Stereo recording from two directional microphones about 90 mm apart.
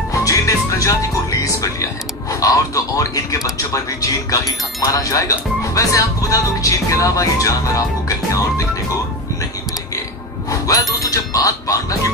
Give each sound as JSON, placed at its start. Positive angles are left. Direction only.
{"t": 0.1, "sound": "music", "side_deg": 40}
{"t": 2.4, "sound": "speech", "side_deg": 40}
{"t": 10.5, "sound": "speech", "side_deg": 40}